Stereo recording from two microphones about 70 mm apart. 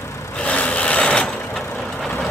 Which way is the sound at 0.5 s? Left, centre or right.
Centre.